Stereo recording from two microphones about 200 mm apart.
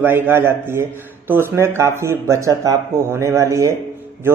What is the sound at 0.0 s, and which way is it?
A man's voice, 10° right (ahead or behind).